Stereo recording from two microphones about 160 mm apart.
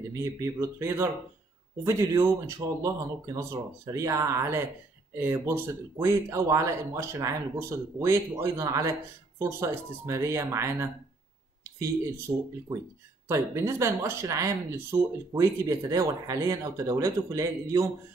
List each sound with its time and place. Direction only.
0.1 s speech: 20° right (ahead or behind)
13.3 s speech: 15° right (ahead or behind)